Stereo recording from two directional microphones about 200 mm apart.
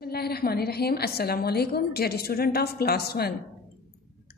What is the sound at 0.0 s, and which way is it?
Speech, 50° left (ahead or behind).